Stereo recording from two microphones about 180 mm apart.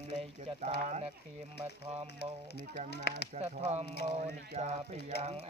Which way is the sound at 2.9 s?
65° left (ahead or behind).